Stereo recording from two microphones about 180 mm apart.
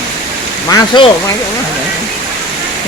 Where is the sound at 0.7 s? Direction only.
25° left (ahead or behind).